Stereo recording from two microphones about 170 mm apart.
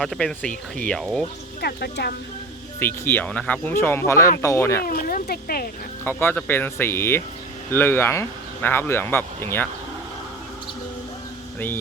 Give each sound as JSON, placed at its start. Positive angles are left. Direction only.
{"t": 0.0, "sound": "speech", "side_deg": 0}
{"t": 1.6, "sound": "speech", "side_deg": 70}
{"t": 2.8, "sound": "speech", "side_deg": 10}
{"t": 4.9, "sound": "speech", "side_deg": 55}
{"t": 6.1, "sound": "speech", "side_deg": 10}